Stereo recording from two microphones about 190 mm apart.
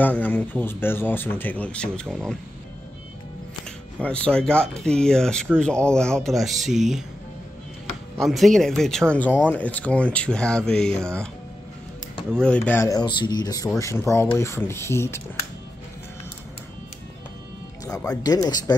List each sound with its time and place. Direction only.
0.0 s speech: 10° left (ahead or behind)
4.0 s speech: 5° left (ahead or behind)
8.2 s speech: centre (ahead or behind)
12.4 s speech: 5° left (ahead or behind)
17.8 s speech: 15° left (ahead or behind)